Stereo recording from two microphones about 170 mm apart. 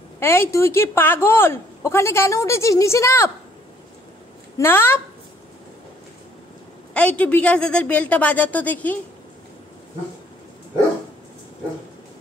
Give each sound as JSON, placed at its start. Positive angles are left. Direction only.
{"t": 0.2, "sound": "a woman's voice", "side_deg": 15}
{"t": 4.6, "sound": "a woman's voice", "side_deg": 15}
{"t": 6.9, "sound": "a woman's voice", "side_deg": 5}